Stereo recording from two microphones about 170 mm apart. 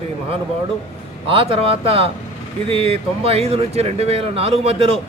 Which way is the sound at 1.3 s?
35° right (ahead or behind).